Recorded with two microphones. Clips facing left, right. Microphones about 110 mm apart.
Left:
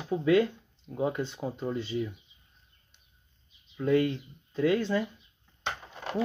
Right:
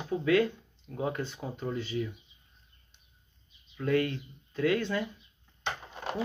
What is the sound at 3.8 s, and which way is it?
Speech, 20° left (ahead or behind).